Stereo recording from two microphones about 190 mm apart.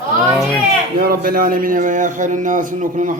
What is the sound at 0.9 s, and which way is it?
A man's voice, 50° right (ahead or behind).